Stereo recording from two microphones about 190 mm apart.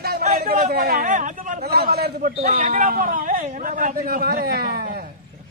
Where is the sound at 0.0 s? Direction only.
55° right (ahead or behind).